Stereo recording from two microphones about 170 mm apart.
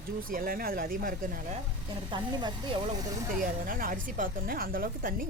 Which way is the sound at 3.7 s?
55° right (ahead or behind).